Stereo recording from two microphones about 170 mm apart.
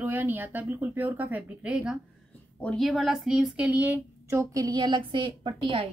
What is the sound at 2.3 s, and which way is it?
A woman's voice, 10° left (ahead or behind).